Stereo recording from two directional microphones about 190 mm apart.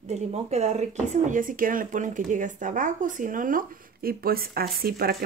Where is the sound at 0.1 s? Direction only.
35° right (ahead or behind).